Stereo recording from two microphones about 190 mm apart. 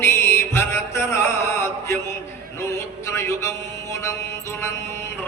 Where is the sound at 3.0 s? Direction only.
15° left (ahead or behind).